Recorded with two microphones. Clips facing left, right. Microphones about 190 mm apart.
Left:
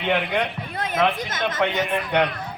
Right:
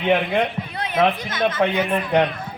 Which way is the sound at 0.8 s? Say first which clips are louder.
Right 2 dB; 45° left (ahead or behind).